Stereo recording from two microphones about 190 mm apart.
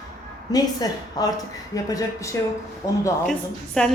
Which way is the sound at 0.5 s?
20° left (ahead or behind).